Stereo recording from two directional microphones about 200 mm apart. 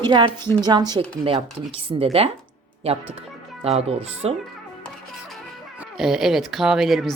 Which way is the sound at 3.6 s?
30° right (ahead or behind).